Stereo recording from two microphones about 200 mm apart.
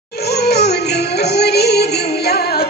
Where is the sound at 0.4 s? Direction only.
55° left (ahead or behind).